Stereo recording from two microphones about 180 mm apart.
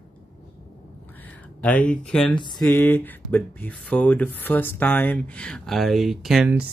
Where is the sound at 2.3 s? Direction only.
25° left (ahead or behind).